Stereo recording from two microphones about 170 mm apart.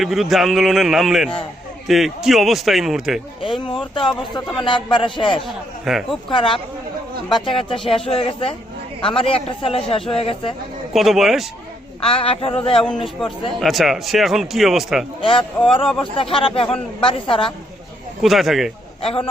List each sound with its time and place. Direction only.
0.0 s a man's voice: centre (ahead or behind)
3.4 s speech: 30° left (ahead or behind)
5.8 s a man's voice: centre (ahead or behind)
6.2 s speech: 30° left (ahead or behind)
10.9 s a man's voice: centre (ahead or behind)
11.9 s speech: 35° left (ahead or behind)
13.6 s a man's voice: centre (ahead or behind)
15.2 s speech: 30° left (ahead or behind)
18.2 s a man's voice: centre (ahead or behind)
19.0 s speech: 30° left (ahead or behind)